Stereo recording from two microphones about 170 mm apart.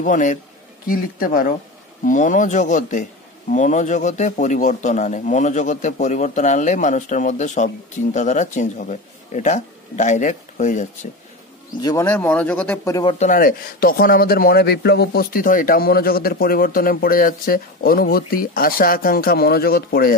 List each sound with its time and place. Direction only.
0.0 s a man's voice: 50° left (ahead or behind)
11.8 s speech: 20° left (ahead or behind)
13.3 s a man's voice: 55° left (ahead or behind)